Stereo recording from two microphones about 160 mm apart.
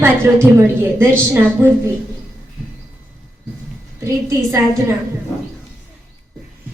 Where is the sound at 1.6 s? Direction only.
15° right (ahead or behind).